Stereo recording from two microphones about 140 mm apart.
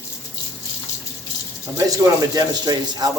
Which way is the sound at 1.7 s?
25° right (ahead or behind).